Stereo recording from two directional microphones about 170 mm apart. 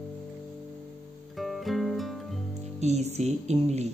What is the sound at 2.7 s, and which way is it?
Music, 40° right (ahead or behind).